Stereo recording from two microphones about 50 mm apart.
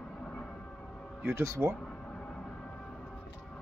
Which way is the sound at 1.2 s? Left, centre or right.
Right.